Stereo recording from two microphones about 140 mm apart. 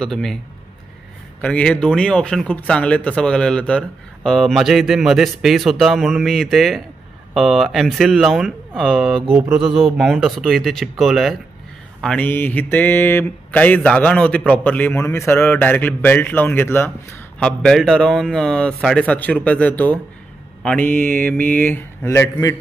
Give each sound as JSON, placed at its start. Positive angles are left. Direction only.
{"t": 0.0, "sound": "speech", "side_deg": 5}
{"t": 1.4, "sound": "speech", "side_deg": 10}
{"t": 12.0, "sound": "mantra", "side_deg": 10}
{"t": 17.4, "sound": "speech", "side_deg": 5}
{"t": 20.6, "sound": "mantra", "side_deg": 10}